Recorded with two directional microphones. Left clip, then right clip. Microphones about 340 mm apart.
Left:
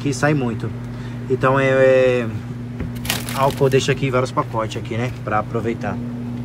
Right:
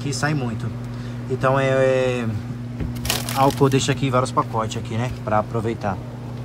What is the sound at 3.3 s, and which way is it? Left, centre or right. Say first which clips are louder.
Speech: left 1 dB; centre.